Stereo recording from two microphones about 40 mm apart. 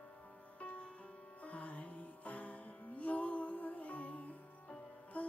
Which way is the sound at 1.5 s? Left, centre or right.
Left.